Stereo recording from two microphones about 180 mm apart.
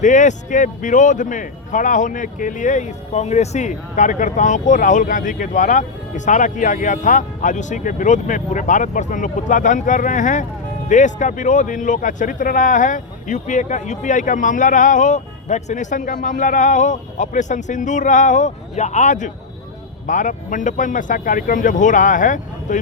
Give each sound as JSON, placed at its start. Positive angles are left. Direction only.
{"t": 0.0, "sound": "speech", "side_deg": 45}